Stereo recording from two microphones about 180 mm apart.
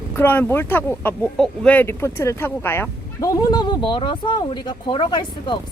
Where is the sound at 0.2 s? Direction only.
10° left (ahead or behind).